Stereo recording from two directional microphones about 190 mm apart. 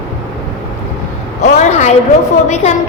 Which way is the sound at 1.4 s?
35° left (ahead or behind).